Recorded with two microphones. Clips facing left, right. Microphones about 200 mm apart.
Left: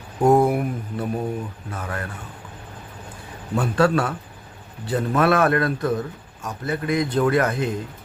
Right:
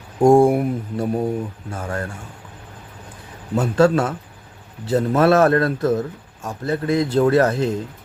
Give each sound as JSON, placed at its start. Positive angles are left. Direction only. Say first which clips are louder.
{"t": 0.2, "sound": "a man's voice", "louder": "right 4 dB", "side_deg": -30}
{"t": 3.5, "sound": "a man's voice", "louder": "right 3 dB", "side_deg": -25}